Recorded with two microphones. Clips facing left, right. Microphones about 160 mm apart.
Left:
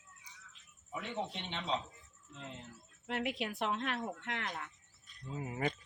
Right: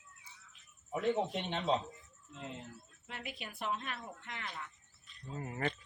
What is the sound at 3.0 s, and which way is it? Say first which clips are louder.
Speech: left 9 dB; 75° left (ahead or behind).